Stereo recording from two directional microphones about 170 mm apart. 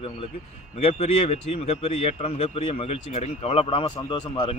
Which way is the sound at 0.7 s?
40° left (ahead or behind).